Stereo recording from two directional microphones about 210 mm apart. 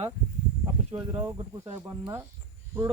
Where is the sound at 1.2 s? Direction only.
15° right (ahead or behind).